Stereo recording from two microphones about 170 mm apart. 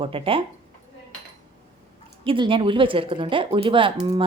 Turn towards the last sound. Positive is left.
turn(degrees=-30)  # may be behind; listen again after turning